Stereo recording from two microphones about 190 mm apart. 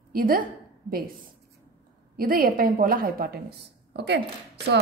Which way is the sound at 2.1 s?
50° right (ahead or behind).